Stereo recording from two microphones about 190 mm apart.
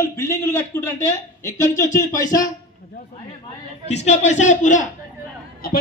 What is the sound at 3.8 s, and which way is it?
A man's voice, 35° left (ahead or behind).